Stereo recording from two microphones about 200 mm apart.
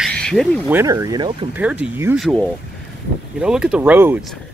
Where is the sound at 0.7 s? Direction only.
15° right (ahead or behind).